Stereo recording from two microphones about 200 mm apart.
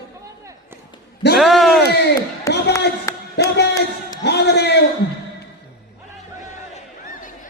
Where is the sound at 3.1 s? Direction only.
15° left (ahead or behind).